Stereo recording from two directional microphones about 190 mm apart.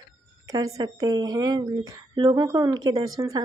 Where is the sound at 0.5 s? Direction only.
20° right (ahead or behind).